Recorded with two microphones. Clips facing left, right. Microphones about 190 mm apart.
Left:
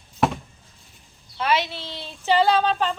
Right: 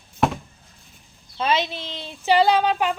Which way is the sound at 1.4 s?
20° right (ahead or behind).